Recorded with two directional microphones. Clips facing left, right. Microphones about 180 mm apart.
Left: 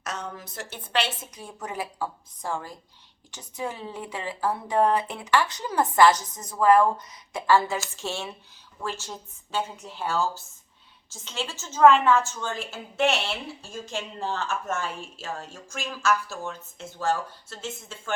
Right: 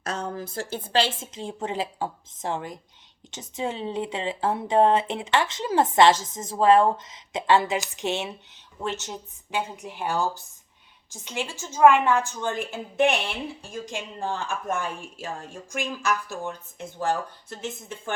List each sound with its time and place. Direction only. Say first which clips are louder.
0.0 s speech: right 5 dB; 30° right (ahead or behind)